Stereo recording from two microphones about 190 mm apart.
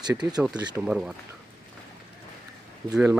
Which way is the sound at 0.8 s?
5° right (ahead or behind).